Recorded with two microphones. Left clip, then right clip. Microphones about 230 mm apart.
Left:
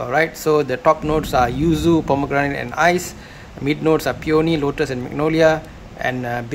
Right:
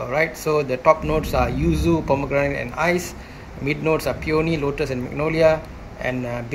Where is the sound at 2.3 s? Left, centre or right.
Left.